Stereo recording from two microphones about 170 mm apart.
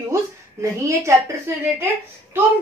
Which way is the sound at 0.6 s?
15° right (ahead or behind).